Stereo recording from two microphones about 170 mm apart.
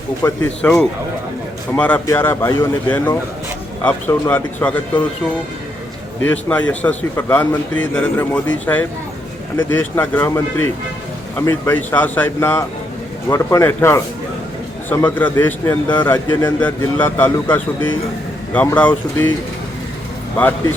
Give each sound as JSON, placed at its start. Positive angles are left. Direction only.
{"t": 0.2, "sound": "a man's voice", "side_deg": 15}
{"t": 1.7, "sound": "a man's voice", "side_deg": 10}
{"t": 6.2, "sound": "a man's voice", "side_deg": 10}